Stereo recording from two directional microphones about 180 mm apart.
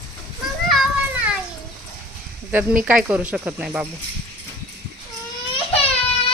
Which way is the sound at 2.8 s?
5° right (ahead or behind).